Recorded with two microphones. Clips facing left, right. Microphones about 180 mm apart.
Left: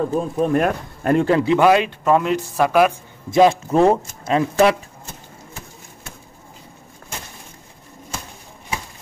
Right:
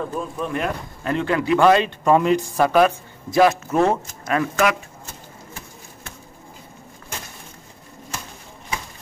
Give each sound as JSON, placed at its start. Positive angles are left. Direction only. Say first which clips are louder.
{"t": 0.0, "sound": "a man's voice", "louder": "left 7 dB", "side_deg": 40}
{"t": 1.3, "sound": "speech", "louder": "even", "side_deg": 25}
{"t": 1.6, "sound": "speech", "louder": "left 1 dB", "side_deg": 10}
{"t": 3.3, "sound": "speech", "louder": "left 2 dB", "side_deg": 25}